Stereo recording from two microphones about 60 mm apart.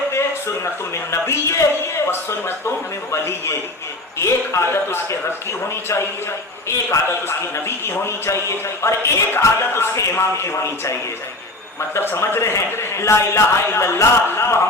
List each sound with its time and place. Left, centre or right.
0.1 s a sound: left
1.1 s a man's voice: left
3.1 s a man's voice: left
12.1 s a man's voice: left